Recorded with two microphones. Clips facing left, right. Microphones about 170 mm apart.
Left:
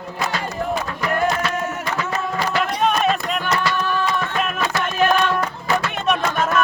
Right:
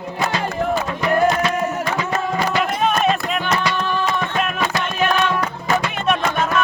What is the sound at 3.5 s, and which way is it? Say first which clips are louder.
Music: even; 20° right (ahead or behind).